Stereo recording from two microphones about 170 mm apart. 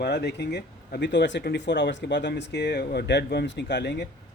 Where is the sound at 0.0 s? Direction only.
80° left.